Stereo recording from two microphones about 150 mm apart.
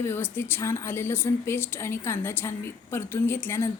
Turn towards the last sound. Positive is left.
turn(degrees=15)  # may be behind; listen again after turning